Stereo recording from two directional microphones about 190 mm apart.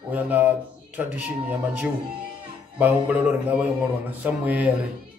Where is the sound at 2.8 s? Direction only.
10° right (ahead or behind).